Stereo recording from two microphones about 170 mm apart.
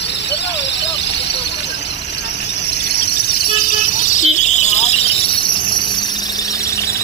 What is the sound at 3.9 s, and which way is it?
Vehicle, 50° left (ahead or behind).